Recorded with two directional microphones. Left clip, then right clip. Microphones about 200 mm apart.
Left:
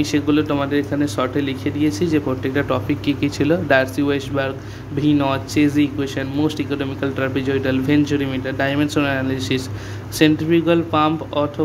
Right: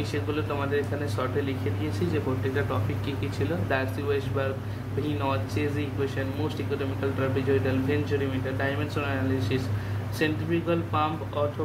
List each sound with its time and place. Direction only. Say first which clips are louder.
0.0 s speech: left 12 dB; 50° left (ahead or behind)